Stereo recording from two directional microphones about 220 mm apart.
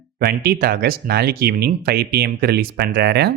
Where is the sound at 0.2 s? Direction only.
45° right (ahead or behind).